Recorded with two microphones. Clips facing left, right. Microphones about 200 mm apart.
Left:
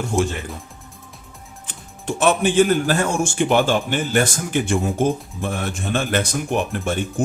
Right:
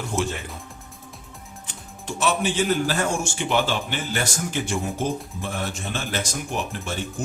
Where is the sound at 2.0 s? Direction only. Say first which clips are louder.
Left 6 dB; 55° left (ahead or behind).